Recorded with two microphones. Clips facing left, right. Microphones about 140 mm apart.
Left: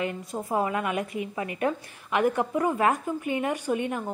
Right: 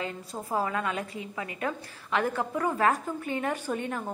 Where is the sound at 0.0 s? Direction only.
15° left (ahead or behind).